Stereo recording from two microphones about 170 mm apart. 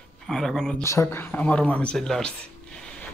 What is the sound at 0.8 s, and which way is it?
Speech, 15° left (ahead or behind).